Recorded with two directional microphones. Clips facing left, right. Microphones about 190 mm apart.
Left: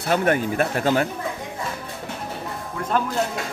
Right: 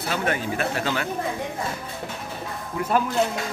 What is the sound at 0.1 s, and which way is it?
Speech, 50° left (ahead or behind).